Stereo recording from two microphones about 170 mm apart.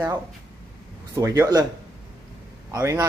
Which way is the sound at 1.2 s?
20° right (ahead or behind).